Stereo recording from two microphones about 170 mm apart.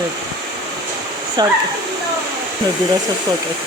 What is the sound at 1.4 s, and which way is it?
Speech, 25° right (ahead or behind).